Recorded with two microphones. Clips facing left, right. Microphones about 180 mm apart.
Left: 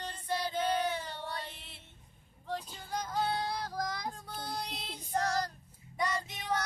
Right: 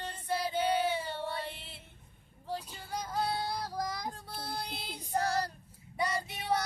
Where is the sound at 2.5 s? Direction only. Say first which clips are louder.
Even; 10° right (ahead or behind).